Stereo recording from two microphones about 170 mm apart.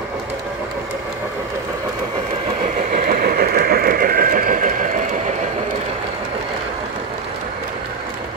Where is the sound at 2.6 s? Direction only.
50° right (ahead or behind).